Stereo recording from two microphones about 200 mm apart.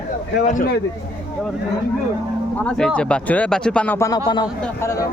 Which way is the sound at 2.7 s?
5° left (ahead or behind).